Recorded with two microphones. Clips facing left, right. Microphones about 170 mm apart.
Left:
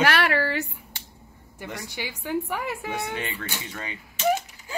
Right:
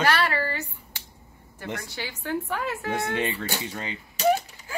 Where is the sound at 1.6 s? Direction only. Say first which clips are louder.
Right 1 dB; 15° left (ahead or behind).